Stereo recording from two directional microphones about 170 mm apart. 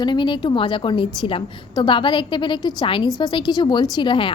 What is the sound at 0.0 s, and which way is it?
A woman's voice, 25° left (ahead or behind).